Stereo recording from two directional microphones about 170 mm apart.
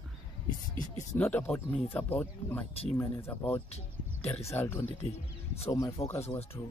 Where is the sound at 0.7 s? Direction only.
45° left (ahead or behind).